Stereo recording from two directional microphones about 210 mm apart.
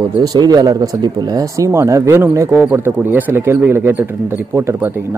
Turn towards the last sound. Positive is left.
turn(degrees=-10)  # may be behind; listen again after turning